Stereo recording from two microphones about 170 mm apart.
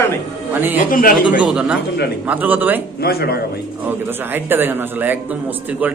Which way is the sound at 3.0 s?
65° left (ahead or behind).